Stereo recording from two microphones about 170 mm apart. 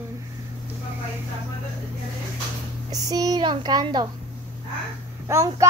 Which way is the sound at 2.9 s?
20° right (ahead or behind).